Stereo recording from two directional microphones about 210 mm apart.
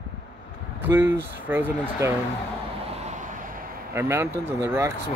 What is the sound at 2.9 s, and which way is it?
Vehicle, 35° right (ahead or behind).